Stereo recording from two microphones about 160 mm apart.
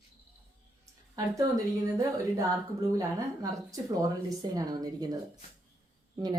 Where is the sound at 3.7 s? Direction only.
20° right (ahead or behind).